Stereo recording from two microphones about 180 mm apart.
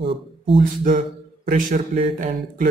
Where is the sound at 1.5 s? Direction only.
45° right (ahead or behind).